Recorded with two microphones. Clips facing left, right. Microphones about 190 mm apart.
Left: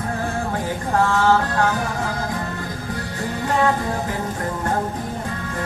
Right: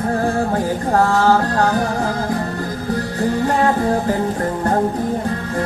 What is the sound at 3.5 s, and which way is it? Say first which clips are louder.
Music: right 4 dB; 40° right (ahead or behind).